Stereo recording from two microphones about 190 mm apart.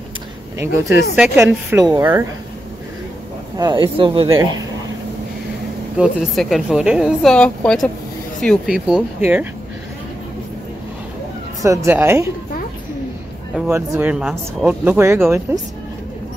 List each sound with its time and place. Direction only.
0.6 s speech: 15° right (ahead or behind)
3.5 s speech: 20° right (ahead or behind)
5.9 s speech: 5° right (ahead or behind)
11.6 s speech: 15° right (ahead or behind)
13.6 s speech: 10° right (ahead or behind)